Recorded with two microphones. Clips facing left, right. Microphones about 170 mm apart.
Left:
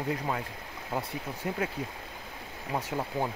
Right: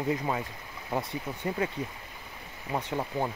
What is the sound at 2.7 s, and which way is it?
Speech, 5° left (ahead or behind).